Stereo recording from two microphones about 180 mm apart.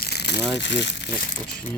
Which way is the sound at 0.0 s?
65° left (ahead or behind).